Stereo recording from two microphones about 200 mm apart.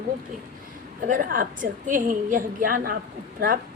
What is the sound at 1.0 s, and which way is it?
A woman's voice, 45° right (ahead or behind).